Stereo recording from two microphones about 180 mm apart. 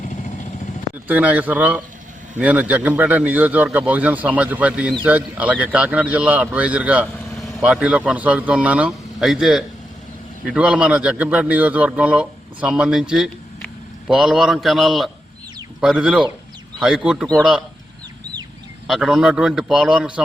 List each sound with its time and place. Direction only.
0.1 s vehicle: 45° left (ahead or behind)
1.0 s a man's voice: 10° right (ahead or behind)
18.9 s speech: centre (ahead or behind)